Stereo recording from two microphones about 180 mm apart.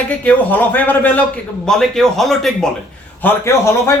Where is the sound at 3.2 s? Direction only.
15° left (ahead or behind).